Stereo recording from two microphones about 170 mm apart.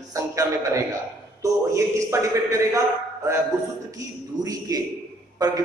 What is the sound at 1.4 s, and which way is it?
A man's voice, 20° right (ahead or behind).